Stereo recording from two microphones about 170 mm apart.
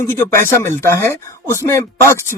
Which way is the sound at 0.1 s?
15° left (ahead or behind).